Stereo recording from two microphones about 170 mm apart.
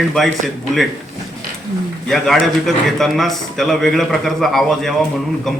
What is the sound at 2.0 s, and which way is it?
Speech, centre (ahead or behind).